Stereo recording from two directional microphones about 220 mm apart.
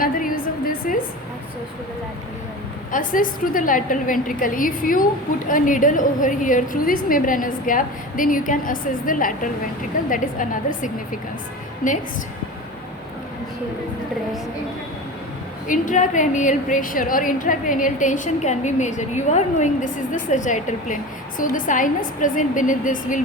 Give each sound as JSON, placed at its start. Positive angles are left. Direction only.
{"t": 0.0, "sound": "music", "side_deg": 40}
{"t": 2.9, "sound": "a woman's voice", "side_deg": 40}
{"t": 15.6, "sound": "a woman's voice", "side_deg": 35}